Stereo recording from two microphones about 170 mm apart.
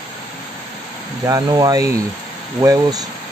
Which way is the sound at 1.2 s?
20° right (ahead or behind).